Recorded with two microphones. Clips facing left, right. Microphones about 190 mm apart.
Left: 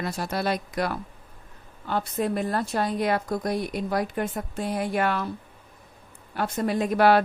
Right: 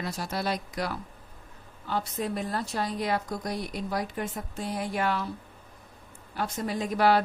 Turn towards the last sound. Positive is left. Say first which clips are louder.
# left 4 dB
turn(degrees=60)  # may be behind; listen again after turning